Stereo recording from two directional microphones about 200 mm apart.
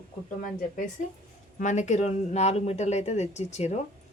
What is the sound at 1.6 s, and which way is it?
Speech, 35° left (ahead or behind).